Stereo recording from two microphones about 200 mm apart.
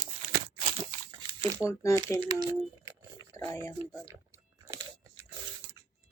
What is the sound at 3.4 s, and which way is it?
Speech, 15° left (ahead or behind).